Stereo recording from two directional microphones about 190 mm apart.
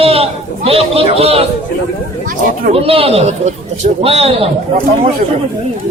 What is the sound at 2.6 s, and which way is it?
Speech, 30° right (ahead or behind).